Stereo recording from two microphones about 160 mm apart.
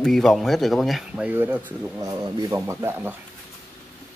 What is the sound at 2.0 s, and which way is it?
Speech, 20° right (ahead or behind).